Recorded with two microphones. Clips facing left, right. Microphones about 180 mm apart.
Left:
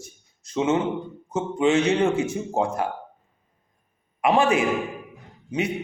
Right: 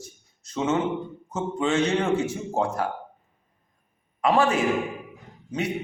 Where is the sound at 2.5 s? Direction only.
20° left (ahead or behind).